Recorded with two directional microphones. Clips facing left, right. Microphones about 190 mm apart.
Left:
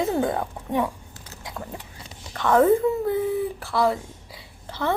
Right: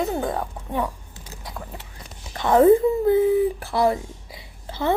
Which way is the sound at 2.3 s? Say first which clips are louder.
Right 3 dB; 15° right (ahead or behind).